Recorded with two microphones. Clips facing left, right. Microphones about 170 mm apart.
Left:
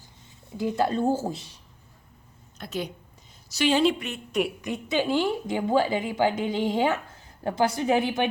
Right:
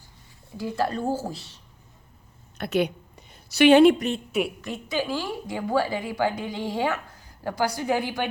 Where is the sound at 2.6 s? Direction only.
65° right (ahead or behind).